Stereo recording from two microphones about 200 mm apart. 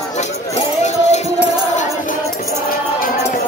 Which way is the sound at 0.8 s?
35° left (ahead or behind).